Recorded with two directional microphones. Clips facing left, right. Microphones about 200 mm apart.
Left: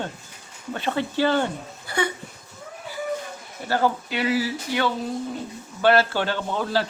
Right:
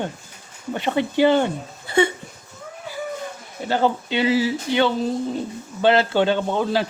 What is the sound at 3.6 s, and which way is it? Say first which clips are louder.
A man's voice: right 2 dB; 20° right (ahead or behind).